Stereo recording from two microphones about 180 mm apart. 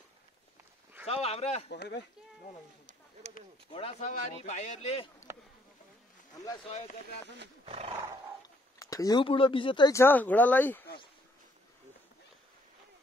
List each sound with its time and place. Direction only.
1.0 s speech: 35° left (ahead or behind)
1.7 s speech: 65° left (ahead or behind)
2.9 s a sound: 40° right (ahead or behind)
3.7 s speech: 35° left (ahead or behind)
4.1 s speech: 45° left (ahead or behind)
7.6 s speech: 35° right (ahead or behind)
8.7 s speech: 20° left (ahead or behind)
9.9 s speech: 10° left (ahead or behind)